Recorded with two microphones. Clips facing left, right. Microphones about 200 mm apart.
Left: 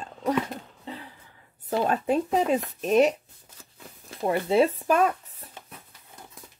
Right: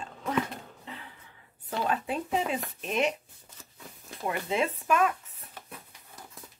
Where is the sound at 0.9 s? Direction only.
35° left (ahead or behind).